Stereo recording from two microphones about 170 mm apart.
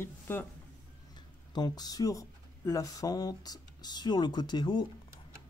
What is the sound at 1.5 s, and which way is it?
Speech, 25° left (ahead or behind).